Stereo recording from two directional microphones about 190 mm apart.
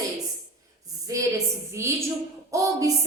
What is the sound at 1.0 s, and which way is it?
A woman's voice, 15° right (ahead or behind).